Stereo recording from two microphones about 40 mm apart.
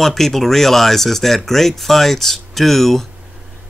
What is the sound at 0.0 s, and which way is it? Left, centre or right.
Speech, centre.